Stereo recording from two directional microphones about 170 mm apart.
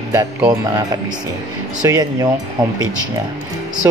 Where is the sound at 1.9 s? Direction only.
25° right (ahead or behind).